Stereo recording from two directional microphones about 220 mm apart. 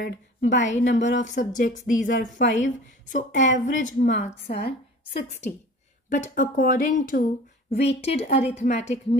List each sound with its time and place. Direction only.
0.0 s a woman's voice: 35° left (ahead or behind)
6.0 s a woman's voice: 35° left (ahead or behind)